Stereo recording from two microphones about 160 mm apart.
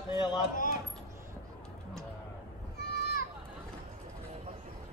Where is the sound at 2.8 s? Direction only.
80° left.